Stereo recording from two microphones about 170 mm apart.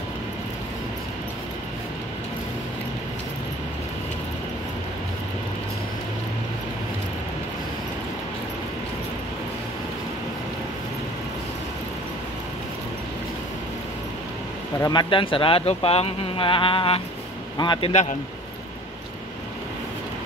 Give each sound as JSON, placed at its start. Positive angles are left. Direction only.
{"t": 14.8, "sound": "speech", "side_deg": 25}